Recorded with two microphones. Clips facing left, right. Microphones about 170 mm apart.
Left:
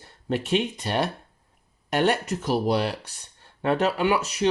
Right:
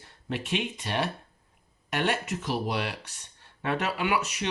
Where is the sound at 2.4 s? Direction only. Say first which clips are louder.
Left 8 dB; 40° left (ahead or behind).